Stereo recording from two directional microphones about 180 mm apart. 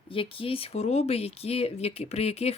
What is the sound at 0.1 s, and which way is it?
Speech, 30° left (ahead or behind).